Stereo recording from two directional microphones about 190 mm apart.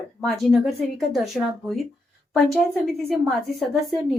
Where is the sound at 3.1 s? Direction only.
Centre (ahead or behind).